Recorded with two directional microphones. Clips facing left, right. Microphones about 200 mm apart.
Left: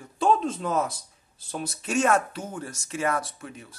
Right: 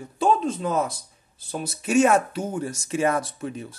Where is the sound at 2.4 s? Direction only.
25° right (ahead or behind).